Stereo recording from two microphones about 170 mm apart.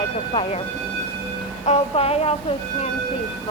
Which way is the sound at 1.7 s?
35° left (ahead or behind).